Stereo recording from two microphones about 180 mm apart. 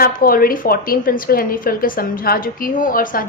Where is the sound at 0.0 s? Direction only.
55° left (ahead or behind).